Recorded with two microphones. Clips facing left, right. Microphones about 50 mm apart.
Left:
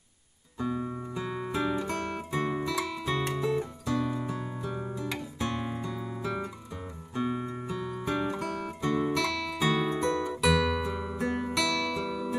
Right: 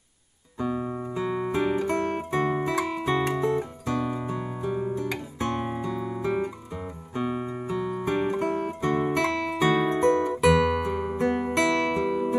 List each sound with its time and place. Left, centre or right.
0.6 s music: right
1.5 s music: right
4.9 s guitar: right
7.2 s music: centre
7.7 s music: right